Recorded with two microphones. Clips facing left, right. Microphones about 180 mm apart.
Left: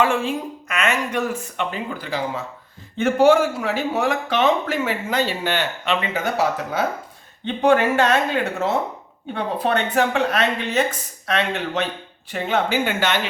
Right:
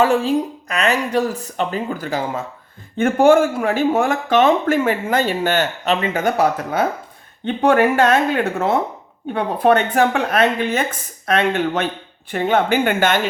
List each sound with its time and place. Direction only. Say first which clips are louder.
0.0 s speech: right 5 dB; 40° right (ahead or behind)